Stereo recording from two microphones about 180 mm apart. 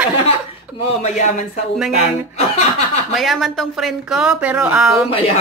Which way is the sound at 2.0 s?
40° left (ahead or behind).